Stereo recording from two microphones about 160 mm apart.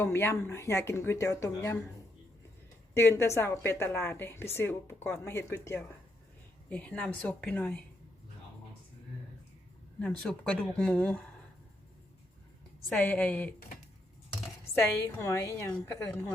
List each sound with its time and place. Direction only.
0.0 s a woman's voice: 15° left (ahead or behind)
2.9 s a woman's voice: 15° left (ahead or behind)
10.0 s a woman's voice: 5° left (ahead or behind)
12.9 s a woman's voice: 5° left (ahead or behind)
14.8 s a woman's voice: 15° left (ahead or behind)